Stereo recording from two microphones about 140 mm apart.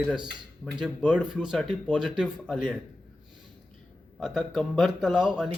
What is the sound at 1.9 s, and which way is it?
Speech, 5° right (ahead or behind).